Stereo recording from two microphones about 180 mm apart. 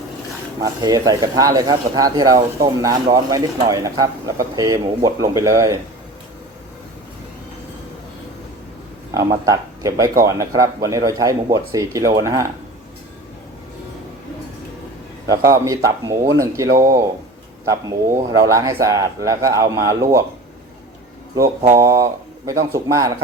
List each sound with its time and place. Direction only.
0.6 s speech: 20° right (ahead or behind)
9.5 s speech: 20° right (ahead or behind)
15.3 s speech: 15° right (ahead or behind)
21.8 s speech: 20° right (ahead or behind)